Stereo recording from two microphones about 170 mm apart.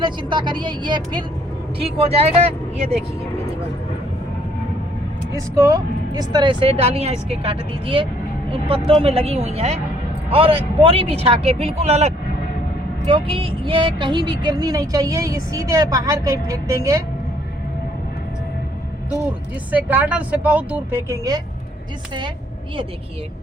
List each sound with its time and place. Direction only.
0.0 s a woman's voice: 25° right (ahead or behind)
5.5 s a woman's voice: 20° right (ahead or behind)
19.7 s speech: 10° right (ahead or behind)